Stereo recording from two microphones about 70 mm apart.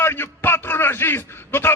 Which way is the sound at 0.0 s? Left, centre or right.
Left.